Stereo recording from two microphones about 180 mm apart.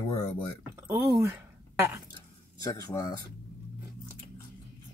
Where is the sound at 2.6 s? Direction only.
20° left (ahead or behind).